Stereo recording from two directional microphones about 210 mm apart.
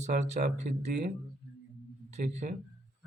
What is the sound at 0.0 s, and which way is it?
Speech, 35° right (ahead or behind).